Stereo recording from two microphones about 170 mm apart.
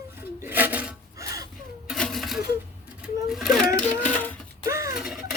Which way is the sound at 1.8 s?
5° left (ahead or behind).